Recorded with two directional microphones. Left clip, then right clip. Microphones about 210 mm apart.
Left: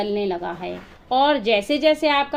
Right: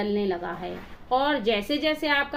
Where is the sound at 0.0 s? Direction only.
35° left (ahead or behind).